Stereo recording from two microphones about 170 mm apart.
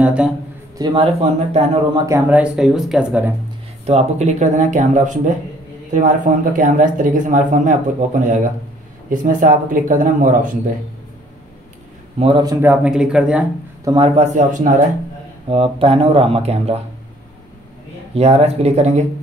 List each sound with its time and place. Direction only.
0.0 s a man's voice: 5° right (ahead or behind)
0.7 s speech: 25° right (ahead or behind)
1.1 s speech: 35° right (ahead or behind)
2.0 s speech: 15° right (ahead or behind)
3.8 s speech: 40° right (ahead or behind)
12.2 s a man's voice: 30° right (ahead or behind)
12.6 s speech: 10° right (ahead or behind)
13.8 s speech: 30° right (ahead or behind); by 14.7 s 50° right (ahead or behind)
15.5 s speech: 35° right (ahead or behind)
18.1 s speech: 35° right (ahead or behind)